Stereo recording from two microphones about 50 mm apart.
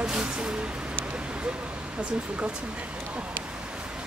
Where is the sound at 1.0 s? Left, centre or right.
Right.